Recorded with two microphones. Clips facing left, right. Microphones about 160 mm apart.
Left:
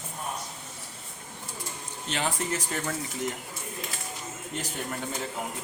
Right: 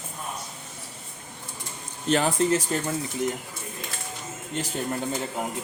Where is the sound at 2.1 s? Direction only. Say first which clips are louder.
Right 8 dB; 40° right (ahead or behind).